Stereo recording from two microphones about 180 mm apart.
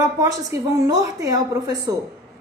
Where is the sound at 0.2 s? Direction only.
20° right (ahead or behind).